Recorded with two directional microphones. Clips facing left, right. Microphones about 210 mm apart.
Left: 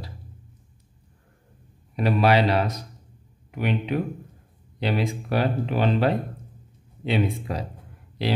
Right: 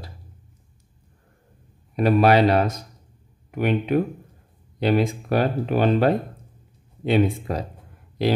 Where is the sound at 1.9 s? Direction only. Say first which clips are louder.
Right 4 dB; 45° right (ahead or behind).